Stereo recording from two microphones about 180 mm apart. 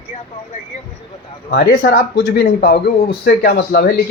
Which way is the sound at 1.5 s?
60° left (ahead or behind).